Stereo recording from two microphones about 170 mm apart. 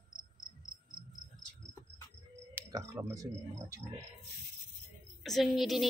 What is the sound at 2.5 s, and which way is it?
Speech, 15° right (ahead or behind).